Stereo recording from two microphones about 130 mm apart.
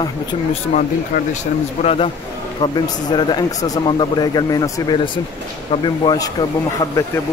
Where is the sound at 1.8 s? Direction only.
50° left (ahead or behind).